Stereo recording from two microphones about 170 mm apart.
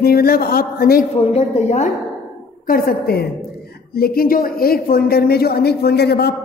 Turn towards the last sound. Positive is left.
turn(degrees=75)  # may be behind; listen again after turning